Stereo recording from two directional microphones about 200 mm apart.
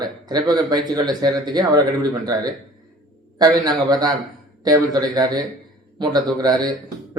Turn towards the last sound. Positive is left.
turn(degrees=-20)  # may be behind; listen again after turning